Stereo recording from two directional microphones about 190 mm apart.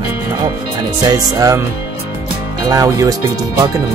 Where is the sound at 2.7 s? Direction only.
20° right (ahead or behind).